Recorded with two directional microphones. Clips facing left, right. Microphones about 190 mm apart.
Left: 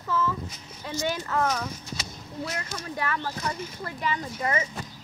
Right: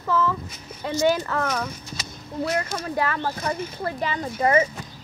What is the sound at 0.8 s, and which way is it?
Speech, 70° right (ahead or behind).